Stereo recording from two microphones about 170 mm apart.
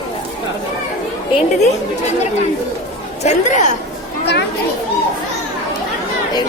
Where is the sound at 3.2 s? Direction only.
40° left (ahead or behind).